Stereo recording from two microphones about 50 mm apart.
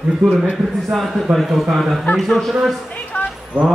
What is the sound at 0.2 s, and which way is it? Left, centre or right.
Speech, right.